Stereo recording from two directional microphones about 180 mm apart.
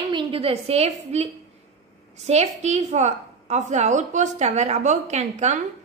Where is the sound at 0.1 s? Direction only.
30° right (ahead or behind).